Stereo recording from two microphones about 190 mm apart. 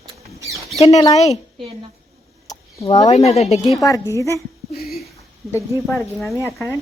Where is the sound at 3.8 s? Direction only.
15° left (ahead or behind).